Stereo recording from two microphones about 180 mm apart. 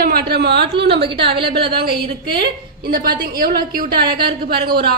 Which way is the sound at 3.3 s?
55° right (ahead or behind).